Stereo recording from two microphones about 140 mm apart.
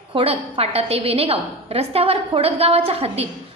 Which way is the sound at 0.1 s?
45° right (ahead or behind).